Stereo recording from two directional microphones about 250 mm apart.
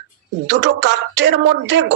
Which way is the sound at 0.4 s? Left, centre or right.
Right.